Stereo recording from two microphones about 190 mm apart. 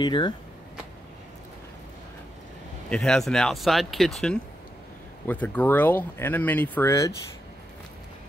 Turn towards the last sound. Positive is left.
turn(degrees=15)  # may be behind; listen again after turning